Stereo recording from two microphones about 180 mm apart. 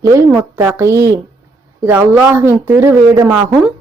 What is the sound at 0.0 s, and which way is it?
A man's voice, 15° right (ahead or behind).